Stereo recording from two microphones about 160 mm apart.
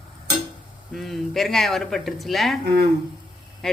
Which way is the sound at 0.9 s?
Centre (ahead or behind).